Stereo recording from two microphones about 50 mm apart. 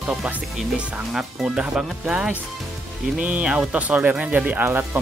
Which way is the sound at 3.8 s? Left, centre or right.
Right.